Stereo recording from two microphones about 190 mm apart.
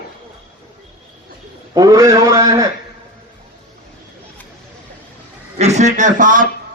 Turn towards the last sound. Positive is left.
turn(degrees=-45)  # may be behind; listen again after turning